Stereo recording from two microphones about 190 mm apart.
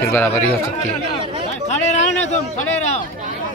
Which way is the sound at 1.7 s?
40° left (ahead or behind).